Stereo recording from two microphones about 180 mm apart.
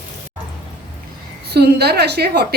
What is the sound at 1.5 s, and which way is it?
A woman's voice, 65° right (ahead or behind).